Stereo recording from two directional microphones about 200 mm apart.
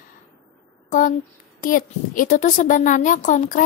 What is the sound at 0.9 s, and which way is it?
A woman's voice, 40° left (ahead or behind).